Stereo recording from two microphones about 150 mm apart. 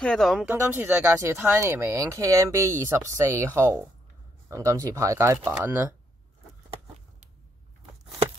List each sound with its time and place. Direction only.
0.0 s speech: 5° left (ahead or behind)
0.5 s speech: 15° right (ahead or behind)